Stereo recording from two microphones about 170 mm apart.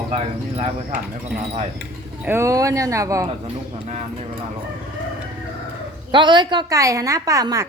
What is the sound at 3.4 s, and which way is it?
Speech, 35° right (ahead or behind).